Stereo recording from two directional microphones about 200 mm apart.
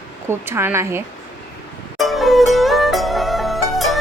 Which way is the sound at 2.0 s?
Centre (ahead or behind).